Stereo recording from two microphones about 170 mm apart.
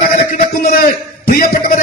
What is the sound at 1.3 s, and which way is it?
Speech, 60° left (ahead or behind).